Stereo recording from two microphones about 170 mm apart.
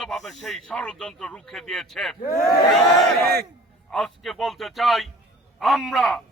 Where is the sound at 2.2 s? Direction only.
20° left (ahead or behind).